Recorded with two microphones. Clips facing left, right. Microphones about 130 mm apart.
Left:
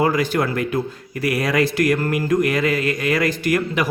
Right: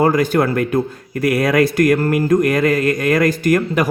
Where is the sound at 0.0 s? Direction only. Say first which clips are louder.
Right 4 dB; 45° right (ahead or behind).